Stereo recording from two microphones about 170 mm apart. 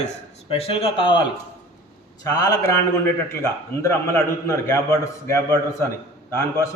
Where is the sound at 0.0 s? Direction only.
35° left (ahead or behind); by 2.8 s 20° left (ahead or behind).